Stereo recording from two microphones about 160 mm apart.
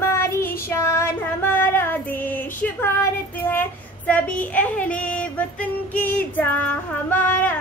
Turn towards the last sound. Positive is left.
turn(degrees=10)  # may be behind; listen again after turning